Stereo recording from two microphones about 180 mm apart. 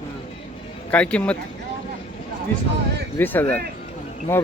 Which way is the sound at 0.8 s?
5° left (ahead or behind).